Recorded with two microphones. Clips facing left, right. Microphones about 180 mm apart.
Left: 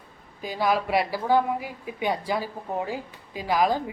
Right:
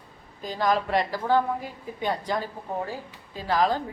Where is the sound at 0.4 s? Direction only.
10° left (ahead or behind).